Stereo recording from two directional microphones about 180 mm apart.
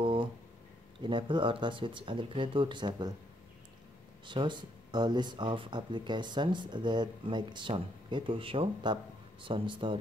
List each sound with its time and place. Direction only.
0.0 s a sound: 30° right (ahead or behind)
1.0 s speech: 25° right (ahead or behind)
4.3 s speech: 25° right (ahead or behind)